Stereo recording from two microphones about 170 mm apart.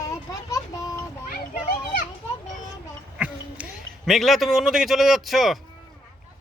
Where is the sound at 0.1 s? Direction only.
20° left (ahead or behind).